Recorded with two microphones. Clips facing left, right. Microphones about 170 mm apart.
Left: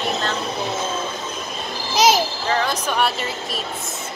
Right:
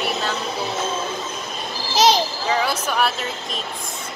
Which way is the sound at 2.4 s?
10° right (ahead or behind).